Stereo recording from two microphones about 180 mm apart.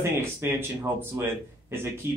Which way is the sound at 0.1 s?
15° right (ahead or behind).